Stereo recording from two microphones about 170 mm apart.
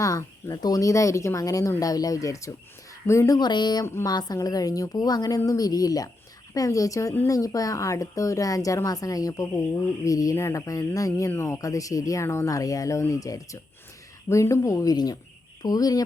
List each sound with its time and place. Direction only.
0.0 s speech: 20° left (ahead or behind)